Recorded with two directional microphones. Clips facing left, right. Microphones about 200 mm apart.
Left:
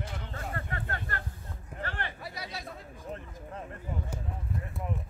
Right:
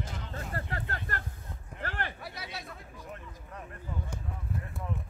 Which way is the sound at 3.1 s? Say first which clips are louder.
Left 4 dB; 25° left (ahead or behind).